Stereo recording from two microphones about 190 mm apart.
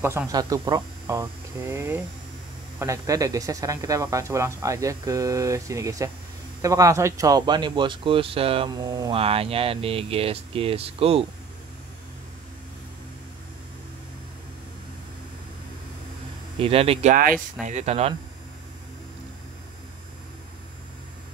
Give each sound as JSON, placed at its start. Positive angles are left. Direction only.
{"t": 0.0, "sound": "speech", "side_deg": -15}
{"t": 16.5, "sound": "speech", "side_deg": -30}
{"t": 17.1, "sound": "speech", "side_deg": -45}